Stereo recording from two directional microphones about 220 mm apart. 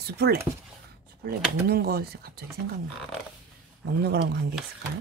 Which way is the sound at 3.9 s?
45° right (ahead or behind).